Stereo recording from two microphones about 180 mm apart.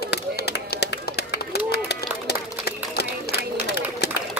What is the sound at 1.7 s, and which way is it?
Run, 65° left (ahead or behind).